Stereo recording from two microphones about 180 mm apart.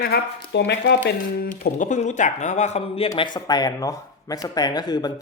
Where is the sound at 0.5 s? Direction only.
70° left (ahead or behind).